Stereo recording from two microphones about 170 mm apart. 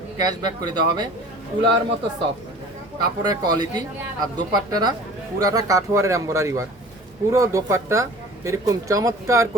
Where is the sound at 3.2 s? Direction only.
25° right (ahead or behind).